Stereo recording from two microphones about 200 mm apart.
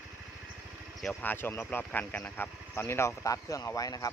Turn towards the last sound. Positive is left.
turn(degrees=15)  # may be behind; listen again after turning